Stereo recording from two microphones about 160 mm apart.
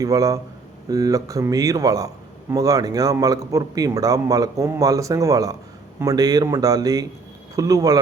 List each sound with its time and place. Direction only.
0.0 s speech: 20° right (ahead or behind)